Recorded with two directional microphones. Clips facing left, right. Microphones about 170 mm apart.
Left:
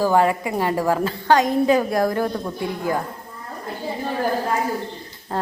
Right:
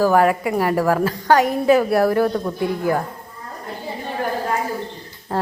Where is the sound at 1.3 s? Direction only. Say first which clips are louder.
Right 1 dB; 10° right (ahead or behind).